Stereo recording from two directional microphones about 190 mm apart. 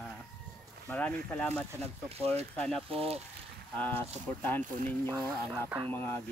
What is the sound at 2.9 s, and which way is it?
Speech, 30° right (ahead or behind).